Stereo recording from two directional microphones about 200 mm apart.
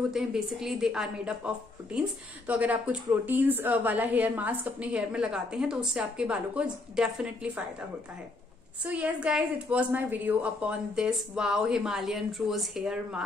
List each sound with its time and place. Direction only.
0.1 s a woman's voice: centre (ahead or behind)
8.8 s a woman's voice: 5° right (ahead or behind)